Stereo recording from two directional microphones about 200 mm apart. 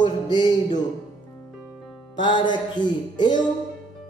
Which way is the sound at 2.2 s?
20° left (ahead or behind).